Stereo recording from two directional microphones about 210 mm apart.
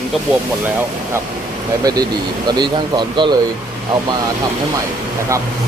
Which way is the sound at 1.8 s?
20° right (ahead or behind).